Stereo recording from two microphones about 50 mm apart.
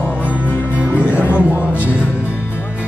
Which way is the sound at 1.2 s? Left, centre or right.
Left.